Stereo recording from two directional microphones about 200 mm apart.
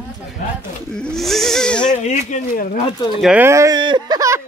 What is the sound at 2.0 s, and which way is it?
Speech, 40° left (ahead or behind).